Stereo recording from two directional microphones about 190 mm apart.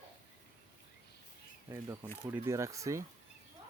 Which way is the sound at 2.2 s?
15° right (ahead or behind).